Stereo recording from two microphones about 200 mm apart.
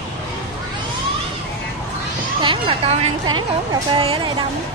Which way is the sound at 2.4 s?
25° right (ahead or behind).